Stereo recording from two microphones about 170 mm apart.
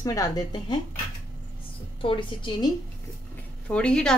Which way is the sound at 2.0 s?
30° left (ahead or behind).